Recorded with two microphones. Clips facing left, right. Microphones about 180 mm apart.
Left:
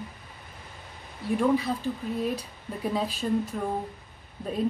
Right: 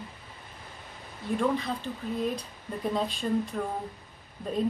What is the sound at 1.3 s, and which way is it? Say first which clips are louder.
Speech: left 3 dB; 5° left (ahead or behind).